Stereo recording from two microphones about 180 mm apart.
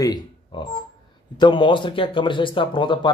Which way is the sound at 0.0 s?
20° left (ahead or behind).